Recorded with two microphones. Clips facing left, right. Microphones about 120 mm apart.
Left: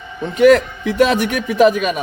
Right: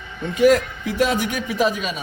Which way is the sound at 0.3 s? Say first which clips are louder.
Left 5 dB; 70° left (ahead or behind).